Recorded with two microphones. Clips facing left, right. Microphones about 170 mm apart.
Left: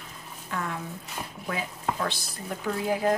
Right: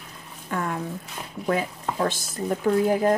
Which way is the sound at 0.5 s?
50° right (ahead or behind).